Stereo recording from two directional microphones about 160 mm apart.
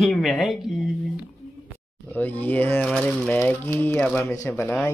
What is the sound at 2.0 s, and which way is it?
Speech, 10° left (ahead or behind).